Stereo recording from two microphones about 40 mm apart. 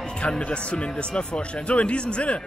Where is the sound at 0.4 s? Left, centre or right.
Left.